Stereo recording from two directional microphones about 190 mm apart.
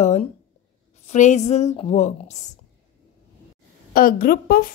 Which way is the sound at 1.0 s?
40° left (ahead or behind).